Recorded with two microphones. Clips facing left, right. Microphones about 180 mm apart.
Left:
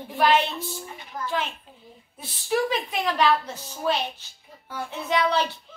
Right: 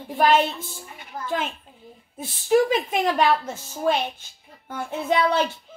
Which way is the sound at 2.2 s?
45° right (ahead or behind).